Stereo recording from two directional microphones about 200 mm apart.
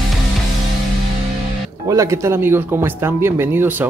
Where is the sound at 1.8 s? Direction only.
15° right (ahead or behind).